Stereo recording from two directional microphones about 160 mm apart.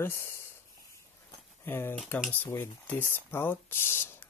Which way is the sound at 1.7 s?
15° left (ahead or behind).